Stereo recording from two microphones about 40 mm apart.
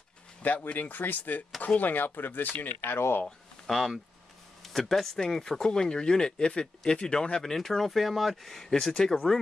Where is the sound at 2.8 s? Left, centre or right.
Left.